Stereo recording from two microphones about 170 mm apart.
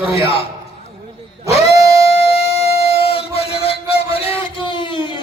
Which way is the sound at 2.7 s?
35° left (ahead or behind).